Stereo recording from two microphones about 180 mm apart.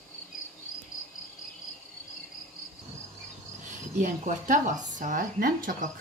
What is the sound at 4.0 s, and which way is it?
Speech, 45° right (ahead or behind).